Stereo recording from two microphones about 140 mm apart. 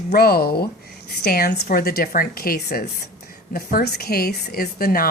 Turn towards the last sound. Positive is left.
turn(degrees=90)